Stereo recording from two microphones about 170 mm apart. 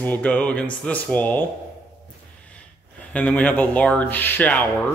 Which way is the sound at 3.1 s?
5° left (ahead or behind).